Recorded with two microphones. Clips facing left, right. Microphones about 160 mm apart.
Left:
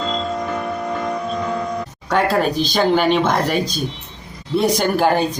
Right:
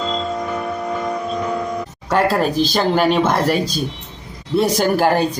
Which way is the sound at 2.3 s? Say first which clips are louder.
Right 1 dB; centre (ahead or behind).